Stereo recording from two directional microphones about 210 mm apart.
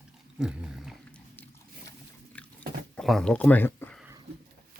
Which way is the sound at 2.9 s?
Centre (ahead or behind).